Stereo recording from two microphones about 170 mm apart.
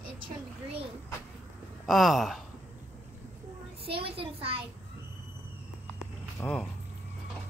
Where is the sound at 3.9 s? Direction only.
35° right (ahead or behind).